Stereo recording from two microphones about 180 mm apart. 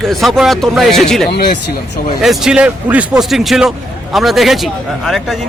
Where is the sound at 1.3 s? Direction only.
60° left (ahead or behind).